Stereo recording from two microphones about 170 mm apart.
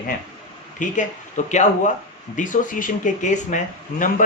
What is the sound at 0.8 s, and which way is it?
Speech, 45° left (ahead or behind).